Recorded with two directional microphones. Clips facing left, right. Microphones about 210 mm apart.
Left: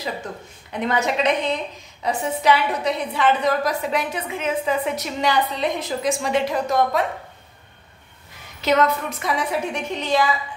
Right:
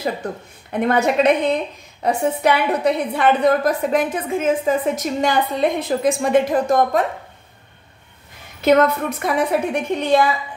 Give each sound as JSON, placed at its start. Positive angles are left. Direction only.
{"t": 0.7, "sound": "a woman's voice", "side_deg": -55}
{"t": 8.5, "sound": "a woman's voice", "side_deg": -55}